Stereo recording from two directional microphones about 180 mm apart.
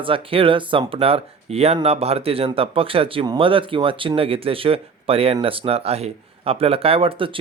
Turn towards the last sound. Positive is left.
turn(degrees=-30)  # may be behind; listen again after turning